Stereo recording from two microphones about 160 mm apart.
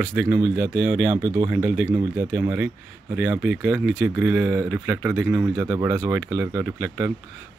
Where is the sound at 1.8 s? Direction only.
15° right (ahead or behind).